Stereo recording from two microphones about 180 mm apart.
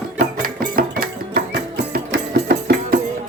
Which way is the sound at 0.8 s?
55° right (ahead or behind).